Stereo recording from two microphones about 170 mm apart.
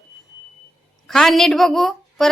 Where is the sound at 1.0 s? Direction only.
Centre (ahead or behind).